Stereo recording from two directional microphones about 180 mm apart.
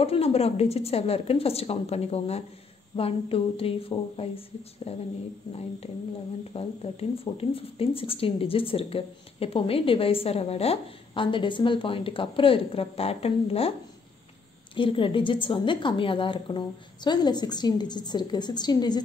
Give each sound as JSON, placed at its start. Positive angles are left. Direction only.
{"t": 0.0, "sound": "speech", "side_deg": 35}
{"t": 6.5, "sound": "speech", "side_deg": 35}
{"t": 14.8, "sound": "a woman's voice", "side_deg": 30}